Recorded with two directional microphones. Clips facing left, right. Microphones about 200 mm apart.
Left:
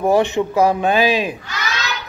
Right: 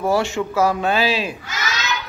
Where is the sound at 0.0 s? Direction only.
20° left (ahead or behind).